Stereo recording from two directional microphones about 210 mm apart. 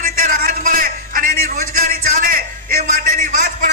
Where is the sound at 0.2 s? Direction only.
40° right (ahead or behind).